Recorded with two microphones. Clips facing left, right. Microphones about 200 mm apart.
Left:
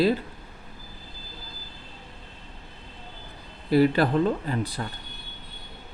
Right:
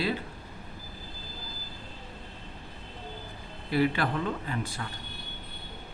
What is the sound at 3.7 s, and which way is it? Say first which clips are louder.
Speech: left 7 dB; 40° left (ahead or behind).